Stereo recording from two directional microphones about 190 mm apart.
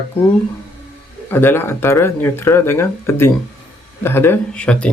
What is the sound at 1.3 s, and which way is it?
Speech, 10° left (ahead or behind).